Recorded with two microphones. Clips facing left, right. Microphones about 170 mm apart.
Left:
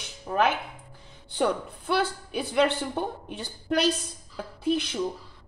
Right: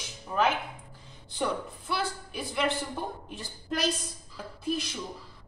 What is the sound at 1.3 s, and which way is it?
A man's voice, 65° left (ahead or behind).